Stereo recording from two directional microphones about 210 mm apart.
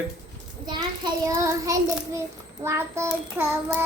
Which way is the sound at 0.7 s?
20° right (ahead or behind).